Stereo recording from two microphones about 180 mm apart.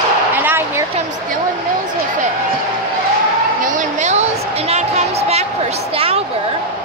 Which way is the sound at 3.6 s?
45° right (ahead or behind).